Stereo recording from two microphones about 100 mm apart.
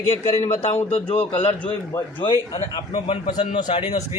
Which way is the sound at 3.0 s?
65° left (ahead or behind).